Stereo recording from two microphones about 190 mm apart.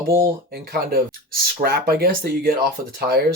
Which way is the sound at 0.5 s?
55° right (ahead or behind).